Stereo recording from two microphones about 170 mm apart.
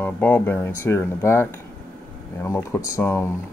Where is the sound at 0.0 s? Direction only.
10° left (ahead or behind).